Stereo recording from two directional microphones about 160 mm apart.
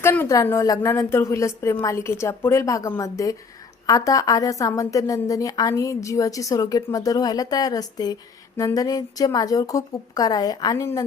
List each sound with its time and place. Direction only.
0.0 s a woman's voice: 15° left (ahead or behind)